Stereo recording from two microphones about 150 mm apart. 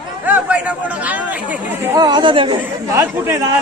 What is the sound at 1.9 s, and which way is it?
Speech, 30° right (ahead or behind).